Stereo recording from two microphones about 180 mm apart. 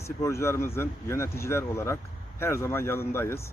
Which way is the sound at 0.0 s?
15° left (ahead or behind).